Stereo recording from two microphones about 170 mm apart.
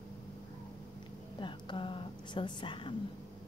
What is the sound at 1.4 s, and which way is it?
Speech, 30° left (ahead or behind).